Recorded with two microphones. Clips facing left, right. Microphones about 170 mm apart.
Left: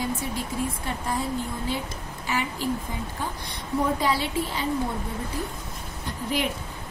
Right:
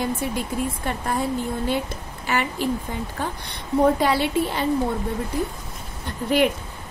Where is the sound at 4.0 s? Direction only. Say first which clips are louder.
Right 5 dB; 65° right (ahead or behind).